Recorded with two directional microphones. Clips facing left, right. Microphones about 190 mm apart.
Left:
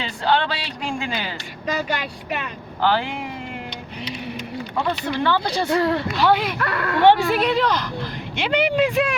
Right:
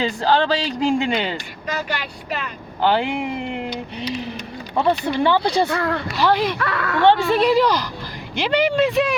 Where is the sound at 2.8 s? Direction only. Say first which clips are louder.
Right 2 dB; 15° right (ahead or behind).